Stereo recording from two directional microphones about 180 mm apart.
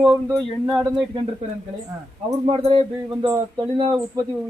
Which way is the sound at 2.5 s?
30° right (ahead or behind).